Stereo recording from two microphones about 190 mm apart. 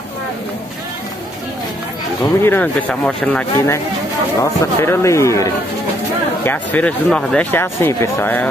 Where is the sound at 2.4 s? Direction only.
10° left (ahead or behind).